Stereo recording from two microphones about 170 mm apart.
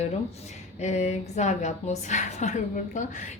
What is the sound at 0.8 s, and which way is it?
A woman's voice, 45° left (ahead or behind).